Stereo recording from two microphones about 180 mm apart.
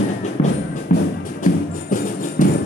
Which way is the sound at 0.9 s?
55° left (ahead or behind).